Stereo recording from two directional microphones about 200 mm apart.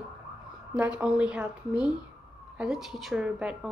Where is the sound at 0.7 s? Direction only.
5° right (ahead or behind).